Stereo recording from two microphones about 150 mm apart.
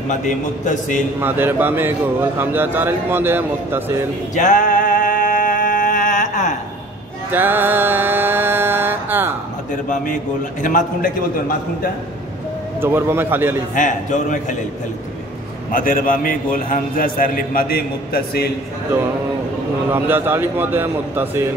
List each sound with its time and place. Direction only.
0.1 s a man's voice: 55° left (ahead or behind)
1.2 s a man's voice: 15° right (ahead or behind)
4.4 s music: 60° left (ahead or behind)
7.3 s mantra: 15° right (ahead or behind)
10.6 s a man's voice: 60° left (ahead or behind)
12.8 s a man's voice: 15° right (ahead or behind)
13.7 s a man's voice: 60° left (ahead or behind)
15.7 s a man's voice: 70° left (ahead or behind); by 18.5 s 90° left
19.9 s a man's voice: 15° right (ahead or behind)